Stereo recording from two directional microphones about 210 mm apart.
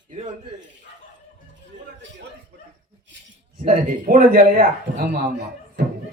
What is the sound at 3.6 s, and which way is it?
Speech, 40° right (ahead or behind).